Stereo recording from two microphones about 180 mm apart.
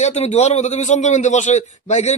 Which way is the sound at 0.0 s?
35° left (ahead or behind).